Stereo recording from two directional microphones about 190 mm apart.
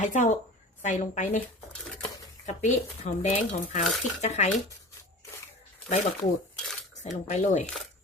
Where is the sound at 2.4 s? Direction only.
40° left (ahead or behind).